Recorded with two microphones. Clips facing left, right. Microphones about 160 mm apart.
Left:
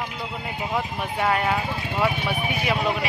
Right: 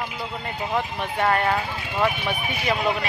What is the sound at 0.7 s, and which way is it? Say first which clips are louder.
Speech: right 1 dB; 5° left (ahead or behind).